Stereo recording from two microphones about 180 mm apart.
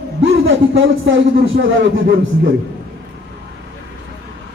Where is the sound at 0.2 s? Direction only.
90° right.